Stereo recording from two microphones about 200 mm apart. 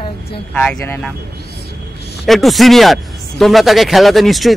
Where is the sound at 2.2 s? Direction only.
Centre (ahead or behind).